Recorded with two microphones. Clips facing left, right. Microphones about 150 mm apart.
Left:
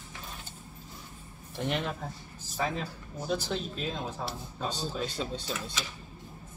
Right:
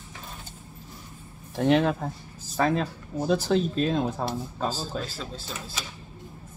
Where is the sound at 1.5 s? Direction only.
90° right.